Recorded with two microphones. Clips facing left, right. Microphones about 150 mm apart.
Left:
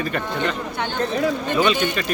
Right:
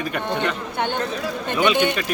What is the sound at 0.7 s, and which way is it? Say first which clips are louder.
Speech: right 2 dB; 20° right (ahead or behind).